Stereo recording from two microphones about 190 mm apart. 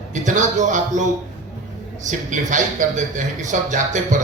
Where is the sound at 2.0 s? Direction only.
40° right (ahead or behind).